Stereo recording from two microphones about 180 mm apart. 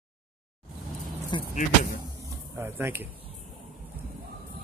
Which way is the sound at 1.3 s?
25° left (ahead or behind).